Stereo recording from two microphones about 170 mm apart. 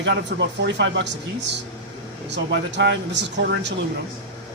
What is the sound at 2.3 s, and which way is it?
Speech, 90° right.